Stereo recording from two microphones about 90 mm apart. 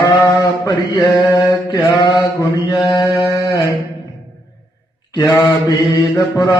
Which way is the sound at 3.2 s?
35° left (ahead or behind).